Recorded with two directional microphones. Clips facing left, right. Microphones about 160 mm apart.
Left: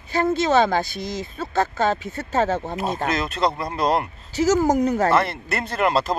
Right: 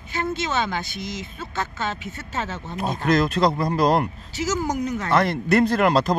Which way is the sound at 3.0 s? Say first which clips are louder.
Right 6 dB; centre (ahead or behind).